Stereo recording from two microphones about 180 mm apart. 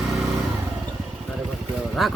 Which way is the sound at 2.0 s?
Centre (ahead or behind).